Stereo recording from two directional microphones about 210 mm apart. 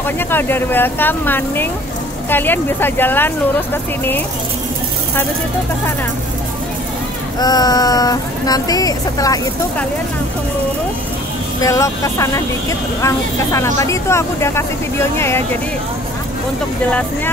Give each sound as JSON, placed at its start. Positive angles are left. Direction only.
{"t": 0.0, "sound": "speech", "side_deg": 10}
{"t": 7.3, "sound": "speech", "side_deg": 20}
{"t": 11.6, "sound": "speech", "side_deg": 15}